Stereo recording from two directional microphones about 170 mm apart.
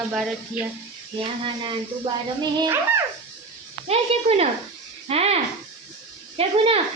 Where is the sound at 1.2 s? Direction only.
30° right (ahead or behind).